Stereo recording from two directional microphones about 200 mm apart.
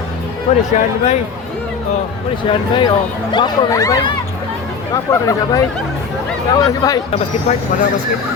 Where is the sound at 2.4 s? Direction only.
25° left (ahead or behind).